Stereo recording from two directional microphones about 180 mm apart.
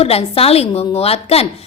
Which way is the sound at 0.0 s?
35° left (ahead or behind).